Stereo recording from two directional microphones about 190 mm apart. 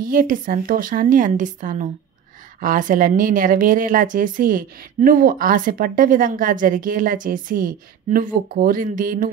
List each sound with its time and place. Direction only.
0.0 s a woman's voice: 45° right (ahead or behind)